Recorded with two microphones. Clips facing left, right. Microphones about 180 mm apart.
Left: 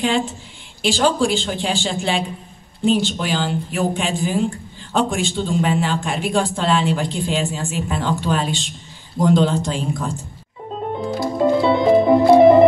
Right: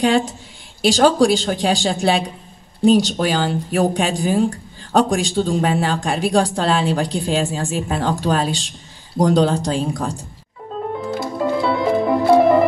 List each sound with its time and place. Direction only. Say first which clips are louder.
1.0 s speech: right 4 dB; 40° right (ahead or behind)
11.1 s music: left 5 dB; 25° left (ahead or behind)